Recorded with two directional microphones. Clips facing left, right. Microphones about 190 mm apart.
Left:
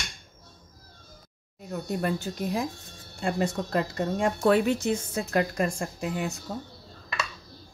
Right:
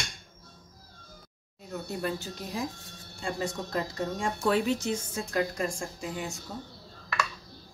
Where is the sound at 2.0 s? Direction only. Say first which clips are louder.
Left 5 dB; 60° left (ahead or behind).